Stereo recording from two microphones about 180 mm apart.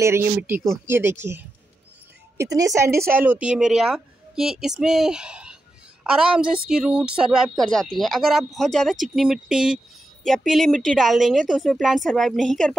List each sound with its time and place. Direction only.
0.0 s speech: 15° right (ahead or behind); by 12.7 s centre (ahead or behind)